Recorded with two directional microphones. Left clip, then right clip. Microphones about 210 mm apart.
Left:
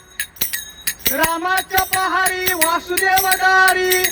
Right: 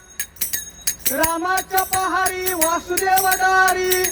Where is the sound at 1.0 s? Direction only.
10° left (ahead or behind).